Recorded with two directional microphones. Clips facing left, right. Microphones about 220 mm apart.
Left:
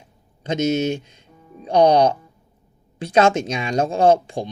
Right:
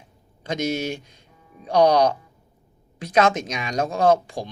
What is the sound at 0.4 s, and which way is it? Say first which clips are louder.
Speech: left 5 dB; 20° left (ahead or behind).